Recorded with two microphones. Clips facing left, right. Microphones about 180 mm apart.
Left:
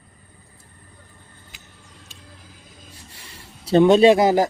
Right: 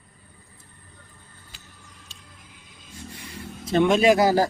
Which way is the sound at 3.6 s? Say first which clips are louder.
Left 5 dB; 30° left (ahead or behind).